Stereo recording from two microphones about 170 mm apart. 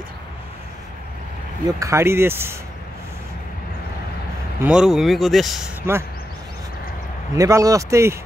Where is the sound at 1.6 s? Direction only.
20° right (ahead or behind).